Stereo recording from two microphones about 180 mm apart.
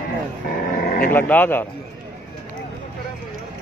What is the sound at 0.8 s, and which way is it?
Livestock, 55° left (ahead or behind).